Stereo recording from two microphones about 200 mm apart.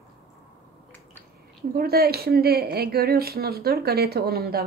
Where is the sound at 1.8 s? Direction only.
50° right (ahead or behind).